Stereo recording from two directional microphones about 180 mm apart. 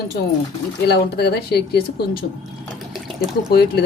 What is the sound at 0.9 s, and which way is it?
Speech, 65° left (ahead or behind).